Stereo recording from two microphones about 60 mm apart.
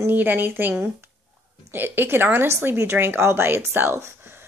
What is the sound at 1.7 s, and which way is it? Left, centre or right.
A woman's voice, right.